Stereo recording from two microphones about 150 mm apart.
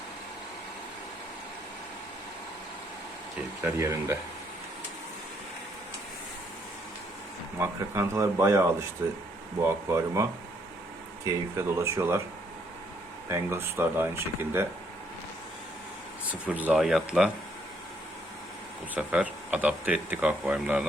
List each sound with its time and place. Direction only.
3.6 s speech: 20° right (ahead or behind)
7.6 s speech: 15° right (ahead or behind)
13.2 s speech: 15° right (ahead or behind)
16.5 s speech: 10° right (ahead or behind)
18.9 s speech: 10° right (ahead or behind)